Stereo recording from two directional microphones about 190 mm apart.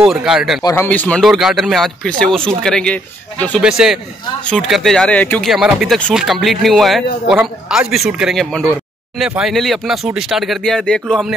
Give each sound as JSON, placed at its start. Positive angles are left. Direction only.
{"t": 0.0, "sound": "speech", "side_deg": -5}
{"t": 0.6, "sound": "speech", "side_deg": 20}
{"t": 0.8, "sound": "speech", "side_deg": 10}